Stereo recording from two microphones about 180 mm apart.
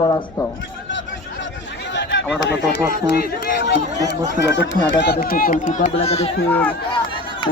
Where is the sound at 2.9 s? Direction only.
55° left (ahead or behind).